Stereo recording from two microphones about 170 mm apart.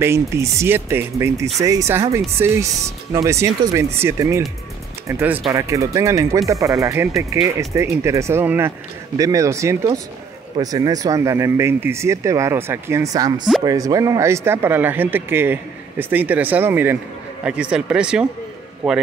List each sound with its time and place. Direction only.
0.0 s speech: 15° right (ahead or behind); by 19.0 s centre (ahead or behind)